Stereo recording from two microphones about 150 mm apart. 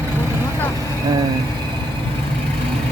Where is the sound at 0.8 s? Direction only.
25° right (ahead or behind).